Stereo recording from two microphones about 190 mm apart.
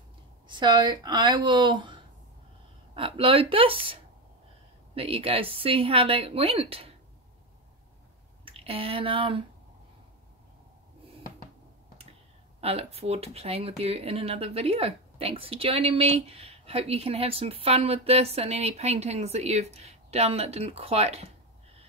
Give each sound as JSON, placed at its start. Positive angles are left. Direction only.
{"t": 0.5, "sound": "a woman's voice", "side_deg": -25}
{"t": 8.5, "sound": "a sound", "side_deg": -30}
{"t": 12.5, "sound": "speech", "side_deg": -30}